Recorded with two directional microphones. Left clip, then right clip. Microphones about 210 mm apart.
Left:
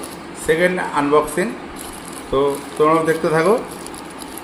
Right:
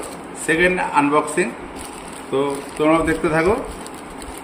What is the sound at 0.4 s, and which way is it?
Speech, 30° right (ahead or behind).